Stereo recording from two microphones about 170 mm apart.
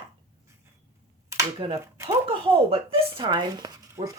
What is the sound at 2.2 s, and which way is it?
Speech, 35° right (ahead or behind).